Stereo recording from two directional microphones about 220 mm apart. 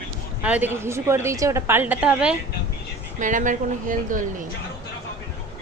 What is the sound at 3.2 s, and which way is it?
A woman's voice, 35° right (ahead or behind).